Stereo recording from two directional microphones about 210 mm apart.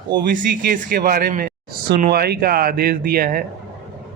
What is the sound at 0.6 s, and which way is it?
Speech, 40° right (ahead or behind).